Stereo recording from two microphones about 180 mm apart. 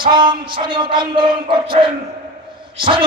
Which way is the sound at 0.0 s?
25° right (ahead or behind).